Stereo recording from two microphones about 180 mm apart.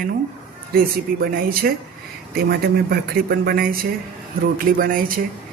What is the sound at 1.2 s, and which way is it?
Speech, 55° right (ahead or behind).